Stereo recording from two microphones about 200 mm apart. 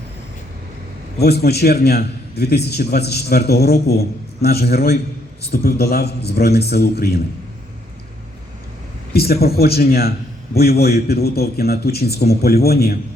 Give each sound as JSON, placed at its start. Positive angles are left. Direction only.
{"t": 1.2, "sound": "a man's voice", "side_deg": 55}
{"t": 9.1, "sound": "a man's voice", "side_deg": 50}